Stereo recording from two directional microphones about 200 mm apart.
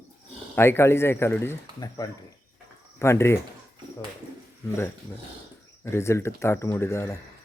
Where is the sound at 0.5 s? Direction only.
10° left (ahead or behind).